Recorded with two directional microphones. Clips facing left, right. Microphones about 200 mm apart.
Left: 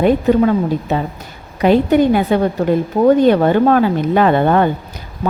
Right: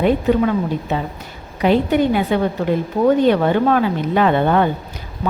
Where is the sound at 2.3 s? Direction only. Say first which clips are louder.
Left 3 dB; 45° left (ahead or behind).